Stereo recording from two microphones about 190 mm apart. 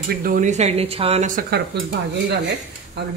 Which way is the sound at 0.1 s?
50° right (ahead or behind).